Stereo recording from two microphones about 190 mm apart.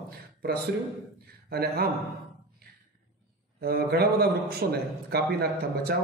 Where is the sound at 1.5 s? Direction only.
55° right (ahead or behind).